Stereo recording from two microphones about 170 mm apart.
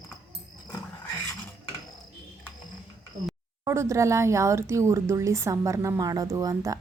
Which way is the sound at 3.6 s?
15° right (ahead or behind).